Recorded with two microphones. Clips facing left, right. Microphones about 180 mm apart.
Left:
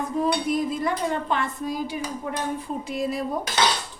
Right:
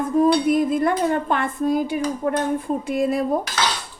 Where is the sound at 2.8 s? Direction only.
55° right (ahead or behind).